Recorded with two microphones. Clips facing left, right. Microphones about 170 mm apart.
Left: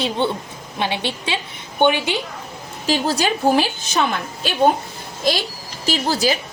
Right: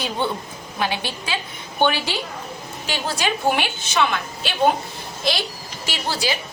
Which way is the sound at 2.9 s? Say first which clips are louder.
Left 5 dB; 40° left (ahead or behind).